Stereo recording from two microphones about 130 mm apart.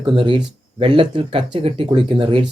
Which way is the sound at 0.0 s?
40° right (ahead or behind).